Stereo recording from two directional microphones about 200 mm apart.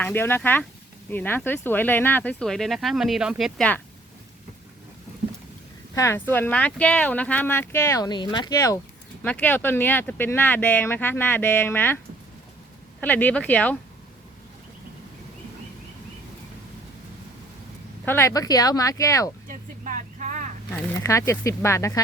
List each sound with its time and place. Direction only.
0.0 s speech: 10° left (ahead or behind)
5.9 s speech: 15° left (ahead or behind)
9.2 s speech: 10° left (ahead or behind)
13.0 s speech: 10° left (ahead or behind)
18.0 s speech: 10° left (ahead or behind)
19.5 s vehicle: 40° right (ahead or behind)
20.7 s speech: 15° left (ahead or behind)